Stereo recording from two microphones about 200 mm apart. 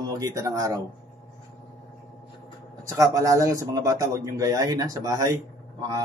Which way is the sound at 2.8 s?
15° right (ahead or behind).